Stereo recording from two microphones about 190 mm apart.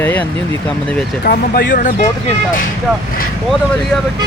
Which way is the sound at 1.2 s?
50° left (ahead or behind).